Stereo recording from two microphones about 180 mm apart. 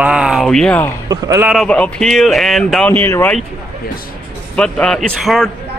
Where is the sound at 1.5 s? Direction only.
5° left (ahead or behind).